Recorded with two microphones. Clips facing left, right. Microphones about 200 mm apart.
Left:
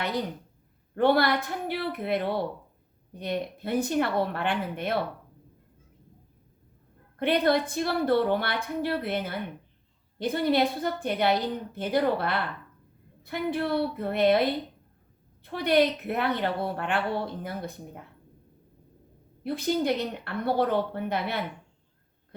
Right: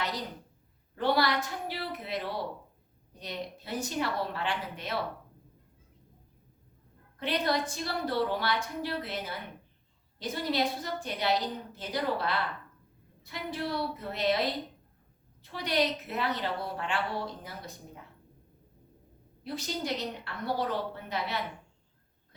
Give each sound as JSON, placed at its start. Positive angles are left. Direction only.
{"t": 0.9, "sound": "a woman's voice", "side_deg": 55}
{"t": 7.2, "sound": "a woman's voice", "side_deg": 55}
{"t": 19.5, "sound": "a woman's voice", "side_deg": 55}